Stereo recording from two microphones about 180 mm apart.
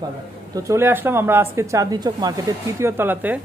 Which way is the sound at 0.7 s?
10° right (ahead or behind).